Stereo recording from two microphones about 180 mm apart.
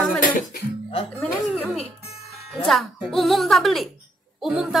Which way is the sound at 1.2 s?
5° left (ahead or behind).